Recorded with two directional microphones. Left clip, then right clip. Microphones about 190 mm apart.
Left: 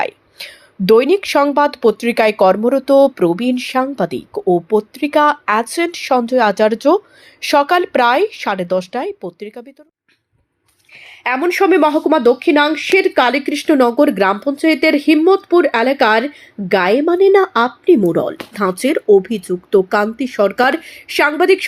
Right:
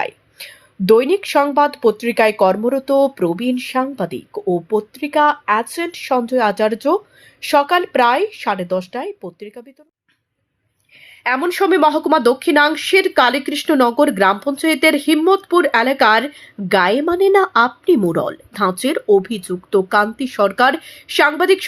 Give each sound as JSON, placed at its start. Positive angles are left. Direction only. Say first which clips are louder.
{"t": 0.0, "sound": "speech", "louder": "left 3 dB", "side_deg": 15}
{"t": 11.0, "sound": "a sound", "louder": "even", "side_deg": 20}
{"t": 11.3, "sound": "speech", "louder": "left 3 dB", "side_deg": 10}